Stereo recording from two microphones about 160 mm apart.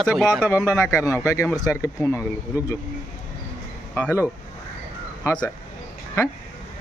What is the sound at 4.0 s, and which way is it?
Speech, 15° left (ahead or behind).